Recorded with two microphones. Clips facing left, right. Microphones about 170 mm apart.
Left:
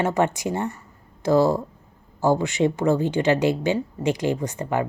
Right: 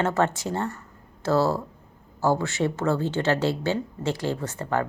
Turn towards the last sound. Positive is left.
turn(degrees=15)  # may be behind; listen again after turning